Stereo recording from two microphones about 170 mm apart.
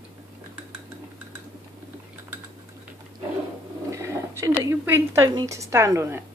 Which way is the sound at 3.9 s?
15° right (ahead or behind).